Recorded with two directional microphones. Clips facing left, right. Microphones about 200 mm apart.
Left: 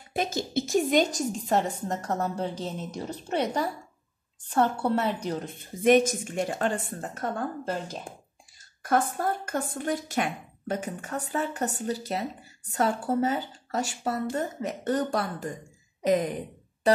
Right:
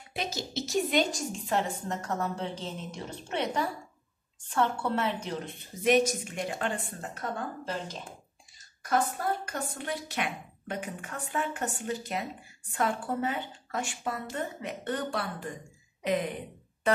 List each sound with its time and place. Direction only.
0.1 s a woman's voice: 50° left (ahead or behind)
9.1 s a woman's voice: 45° left (ahead or behind)